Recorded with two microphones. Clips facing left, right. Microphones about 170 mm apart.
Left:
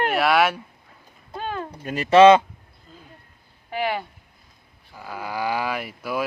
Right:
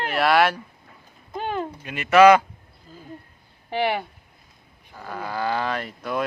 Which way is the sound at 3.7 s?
25° right (ahead or behind).